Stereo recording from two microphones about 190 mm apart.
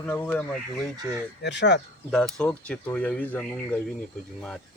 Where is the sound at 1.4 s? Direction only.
65° left (ahead or behind).